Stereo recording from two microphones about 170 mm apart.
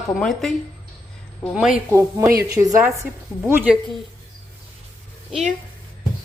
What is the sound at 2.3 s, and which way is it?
Speech, 70° right (ahead or behind).